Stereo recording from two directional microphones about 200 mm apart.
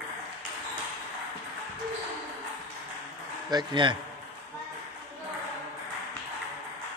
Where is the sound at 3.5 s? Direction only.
20° right (ahead or behind).